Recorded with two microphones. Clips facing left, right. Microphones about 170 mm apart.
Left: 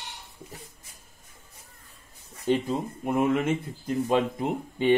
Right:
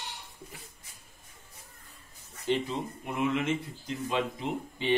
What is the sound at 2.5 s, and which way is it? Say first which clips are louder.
Speech: left 4 dB; 50° left (ahead or behind).